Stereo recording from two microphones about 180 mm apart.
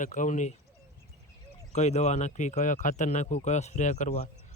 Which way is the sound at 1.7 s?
40° left (ahead or behind).